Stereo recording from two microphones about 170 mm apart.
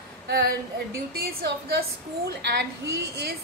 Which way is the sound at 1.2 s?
65° right (ahead or behind).